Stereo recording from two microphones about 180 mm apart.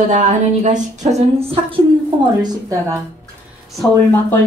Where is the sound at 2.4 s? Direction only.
20° right (ahead or behind).